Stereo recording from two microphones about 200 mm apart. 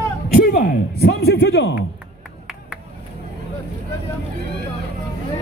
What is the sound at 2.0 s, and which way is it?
Music, 5° right (ahead or behind).